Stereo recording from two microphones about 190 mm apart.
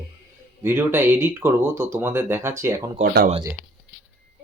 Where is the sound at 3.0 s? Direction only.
50° right (ahead or behind).